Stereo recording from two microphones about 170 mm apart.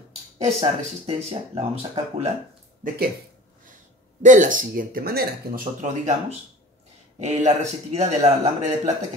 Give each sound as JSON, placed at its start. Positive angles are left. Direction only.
{"t": 0.5, "sound": "speech", "side_deg": -35}
{"t": 2.8, "sound": "speech", "side_deg": -55}
{"t": 4.2, "sound": "speech", "side_deg": -50}
{"t": 7.2, "sound": "speech", "side_deg": -40}